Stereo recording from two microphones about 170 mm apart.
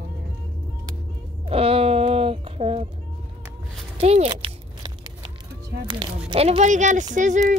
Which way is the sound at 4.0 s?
40° right (ahead or behind).